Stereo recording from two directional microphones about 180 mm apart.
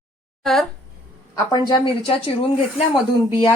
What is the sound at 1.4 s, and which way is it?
Speech, 25° left (ahead or behind).